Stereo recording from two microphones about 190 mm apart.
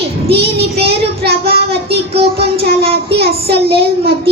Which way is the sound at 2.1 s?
30° right (ahead or behind).